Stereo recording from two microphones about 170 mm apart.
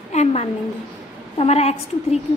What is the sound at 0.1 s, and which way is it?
A woman's voice, 40° left (ahead or behind).